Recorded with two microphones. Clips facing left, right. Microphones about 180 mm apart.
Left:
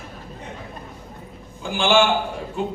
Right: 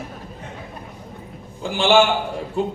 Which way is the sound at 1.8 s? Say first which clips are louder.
Right 2 dB; 40° right (ahead or behind).